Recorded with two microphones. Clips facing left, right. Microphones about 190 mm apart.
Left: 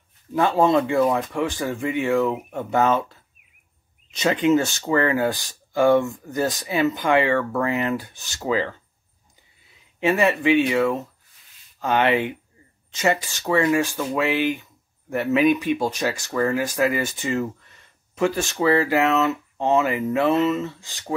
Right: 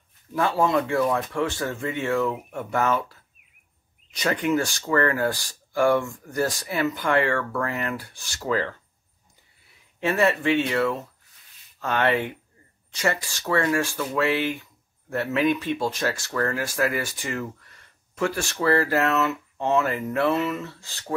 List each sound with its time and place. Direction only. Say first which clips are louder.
0.3 s speech: left 4 dB; 20° left (ahead or behind)
9.9 s speech: left 2 dB; 15° left (ahead or behind)